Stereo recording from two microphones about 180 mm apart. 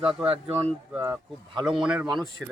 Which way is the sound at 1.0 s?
20° right (ahead or behind).